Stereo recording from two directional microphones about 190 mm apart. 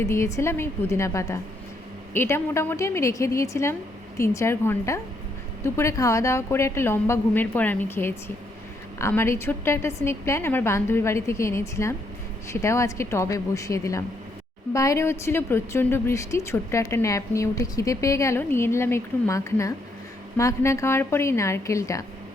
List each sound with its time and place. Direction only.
0.0 s a woman's voice: 15° left (ahead or behind)